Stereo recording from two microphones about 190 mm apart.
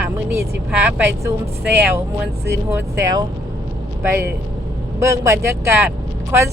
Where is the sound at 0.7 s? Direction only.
10° right (ahead or behind).